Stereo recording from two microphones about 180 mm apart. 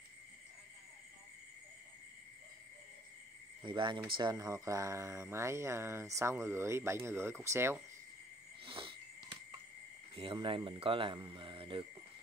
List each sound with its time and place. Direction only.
3.6 s speech: 25° right (ahead or behind)
8.6 s wheeze: 30° right (ahead or behind)
10.1 s speech: 30° right (ahead or behind)
11.3 s cricket: 25° right (ahead or behind)